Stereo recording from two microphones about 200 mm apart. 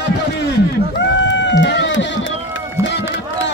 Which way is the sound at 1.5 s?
65° left (ahead or behind).